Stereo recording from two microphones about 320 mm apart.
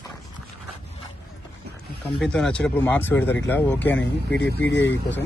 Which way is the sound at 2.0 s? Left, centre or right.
Centre.